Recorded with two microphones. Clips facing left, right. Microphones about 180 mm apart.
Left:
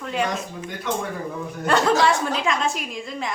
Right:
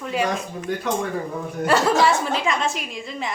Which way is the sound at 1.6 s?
5° right (ahead or behind).